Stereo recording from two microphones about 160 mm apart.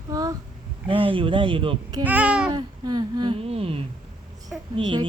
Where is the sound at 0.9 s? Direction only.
35° right (ahead or behind).